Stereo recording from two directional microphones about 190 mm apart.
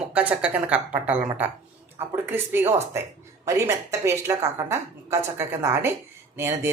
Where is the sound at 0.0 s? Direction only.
5° right (ahead or behind).